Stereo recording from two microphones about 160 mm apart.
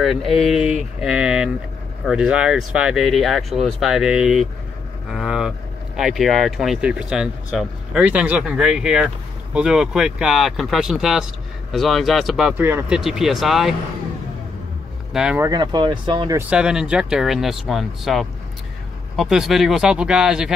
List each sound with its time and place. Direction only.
0.0 s speech: centre (ahead or behind)
13.0 s speech: centre (ahead or behind)
15.1 s speech: 5° right (ahead or behind)
15.4 s speech: 25° right (ahead or behind)
16.3 s speech: 5° right (ahead or behind)